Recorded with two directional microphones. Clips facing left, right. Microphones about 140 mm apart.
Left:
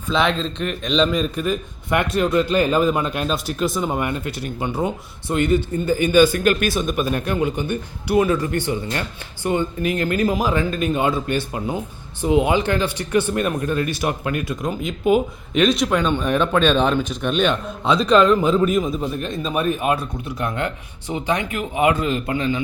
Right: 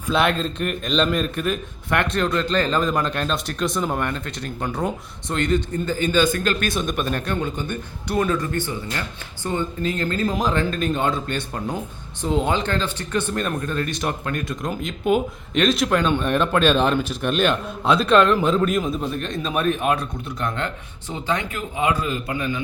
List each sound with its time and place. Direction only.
0.1 s a man's voice: 5° right (ahead or behind)
21.1 s a man's voice: 15° left (ahead or behind)